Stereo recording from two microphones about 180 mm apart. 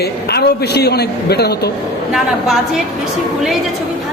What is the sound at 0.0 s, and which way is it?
A man's voice, 65° left (ahead or behind).